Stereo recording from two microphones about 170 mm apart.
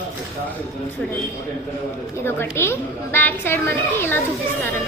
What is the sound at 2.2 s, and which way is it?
A woman's voice, 15° left (ahead or behind).